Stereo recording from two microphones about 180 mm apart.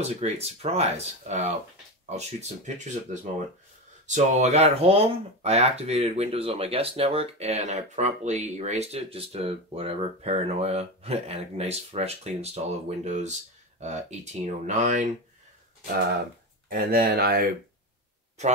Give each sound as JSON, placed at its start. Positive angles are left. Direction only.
{"t": 0.0, "sound": "speech", "side_deg": -35}
{"t": 16.6, "sound": "speech", "side_deg": -55}